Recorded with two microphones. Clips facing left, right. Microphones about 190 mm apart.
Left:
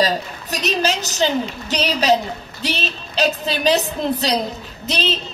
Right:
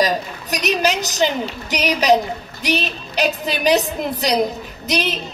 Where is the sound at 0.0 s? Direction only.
15° right (ahead or behind).